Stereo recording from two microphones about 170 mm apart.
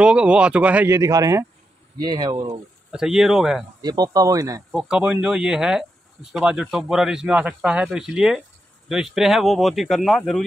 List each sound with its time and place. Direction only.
0.0 s speech: 5° right (ahead or behind); by 2.6 s 25° right (ahead or behind)
2.9 s speech: centre (ahead or behind)
3.8 s speech: 25° right (ahead or behind)
4.7 s speech: 5° right (ahead or behind)